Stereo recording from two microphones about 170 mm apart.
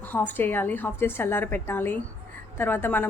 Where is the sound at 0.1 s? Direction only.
10° left (ahead or behind).